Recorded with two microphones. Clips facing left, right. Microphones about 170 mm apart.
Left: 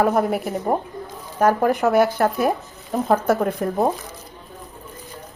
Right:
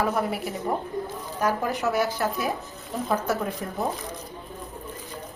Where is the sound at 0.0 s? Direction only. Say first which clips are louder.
Left 7 dB; 50° left (ahead or behind).